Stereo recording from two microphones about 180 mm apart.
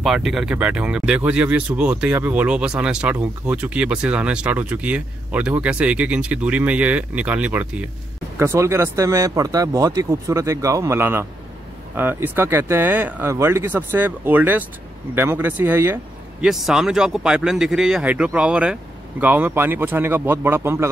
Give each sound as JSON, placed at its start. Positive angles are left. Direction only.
{"t": 0.0, "sound": "speech", "side_deg": 0}